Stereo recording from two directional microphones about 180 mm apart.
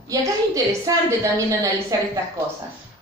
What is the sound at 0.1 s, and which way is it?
A woman's voice, 20° right (ahead or behind).